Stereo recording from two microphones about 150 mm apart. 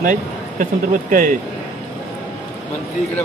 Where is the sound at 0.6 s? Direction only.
60° right (ahead or behind).